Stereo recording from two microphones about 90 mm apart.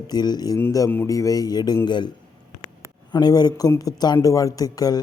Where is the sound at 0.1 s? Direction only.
50° left (ahead or behind).